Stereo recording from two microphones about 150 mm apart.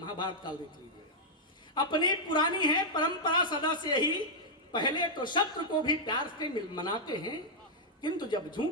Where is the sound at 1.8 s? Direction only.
30° left (ahead or behind).